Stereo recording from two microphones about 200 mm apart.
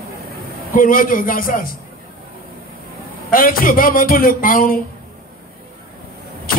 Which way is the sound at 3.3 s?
45° left (ahead or behind).